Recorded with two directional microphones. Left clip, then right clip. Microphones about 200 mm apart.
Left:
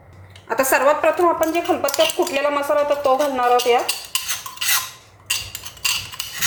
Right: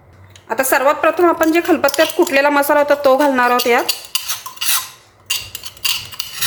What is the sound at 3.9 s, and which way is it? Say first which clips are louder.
Cutlery: right 3 dB; 5° left (ahead or behind).